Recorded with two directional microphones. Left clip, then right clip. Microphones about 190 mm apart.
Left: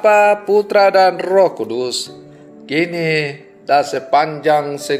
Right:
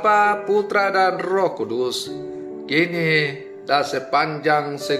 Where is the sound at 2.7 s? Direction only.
10° left (ahead or behind).